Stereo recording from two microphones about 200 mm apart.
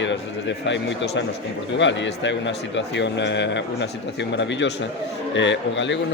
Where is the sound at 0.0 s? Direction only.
65° left (ahead or behind).